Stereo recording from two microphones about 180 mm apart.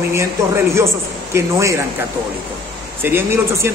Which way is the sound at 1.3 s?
15° right (ahead or behind).